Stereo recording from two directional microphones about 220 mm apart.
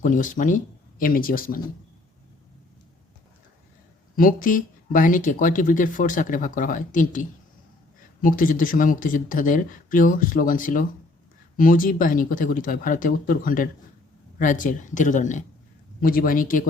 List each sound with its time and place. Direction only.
0.0 s speech: 35° left (ahead or behind)
4.1 s speech: 40° left (ahead or behind)